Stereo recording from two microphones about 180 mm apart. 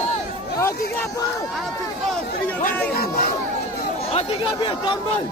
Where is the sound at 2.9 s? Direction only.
55° left (ahead or behind).